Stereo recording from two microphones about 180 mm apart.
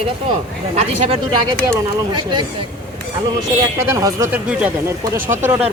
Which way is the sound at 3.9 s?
20° right (ahead or behind).